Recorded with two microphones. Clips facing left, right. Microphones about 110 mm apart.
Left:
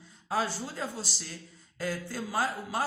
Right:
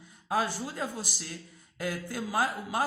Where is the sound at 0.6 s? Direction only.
10° right (ahead or behind).